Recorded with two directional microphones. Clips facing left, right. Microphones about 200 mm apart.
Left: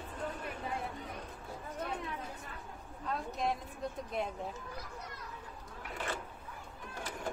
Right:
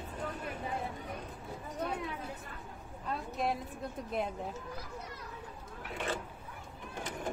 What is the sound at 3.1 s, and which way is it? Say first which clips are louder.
Speech: right 1 dB; centre (ahead or behind).